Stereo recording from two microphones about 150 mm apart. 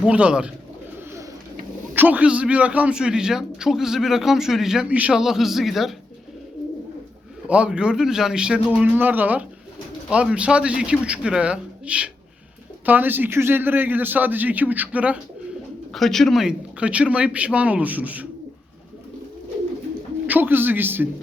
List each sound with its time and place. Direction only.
0.0 s a man's voice: 10° right (ahead or behind)
2.0 s a man's voice: 10° right (ahead or behind)
7.4 s a man's voice: 5° right (ahead or behind)
15.9 s a man's voice: centre (ahead or behind)
20.2 s a man's voice: 10° right (ahead or behind)